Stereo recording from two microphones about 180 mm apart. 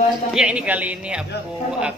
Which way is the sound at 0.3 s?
5° right (ahead or behind).